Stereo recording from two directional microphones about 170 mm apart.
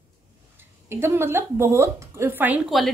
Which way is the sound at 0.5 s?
15° right (ahead or behind).